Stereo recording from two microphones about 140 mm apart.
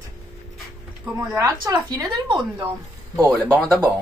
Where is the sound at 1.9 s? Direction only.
30° right (ahead or behind).